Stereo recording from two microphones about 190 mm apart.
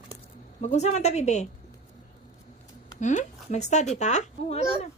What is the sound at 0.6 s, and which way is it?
Speech, 35° left (ahead or behind).